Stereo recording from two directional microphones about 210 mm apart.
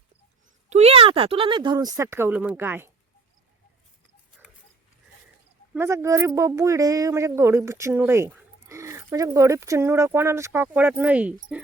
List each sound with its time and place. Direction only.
0.7 s speech: 30° right (ahead or behind); by 2.9 s 10° right (ahead or behind)
5.7 s speech: 10° right (ahead or behind)